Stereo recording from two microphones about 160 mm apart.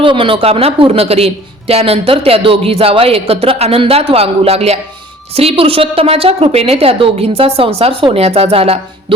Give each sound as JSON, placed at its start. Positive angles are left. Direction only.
{"t": 0.0, "sound": "a woman's voice", "side_deg": -30}